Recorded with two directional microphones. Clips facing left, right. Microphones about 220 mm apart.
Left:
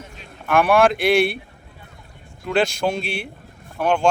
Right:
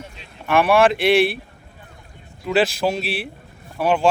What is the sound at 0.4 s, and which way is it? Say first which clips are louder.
Speech: even; centre (ahead or behind).